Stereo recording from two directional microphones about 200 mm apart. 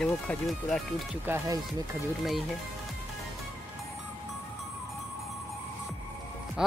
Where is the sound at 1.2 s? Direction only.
15° right (ahead or behind).